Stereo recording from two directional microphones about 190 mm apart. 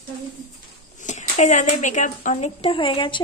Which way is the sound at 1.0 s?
40° left (ahead or behind).